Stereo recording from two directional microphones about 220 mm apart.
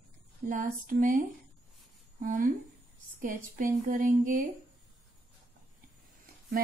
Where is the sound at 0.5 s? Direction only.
40° right (ahead or behind).